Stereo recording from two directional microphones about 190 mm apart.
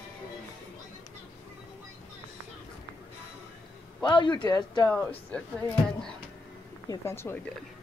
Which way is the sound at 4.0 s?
25° left (ahead or behind).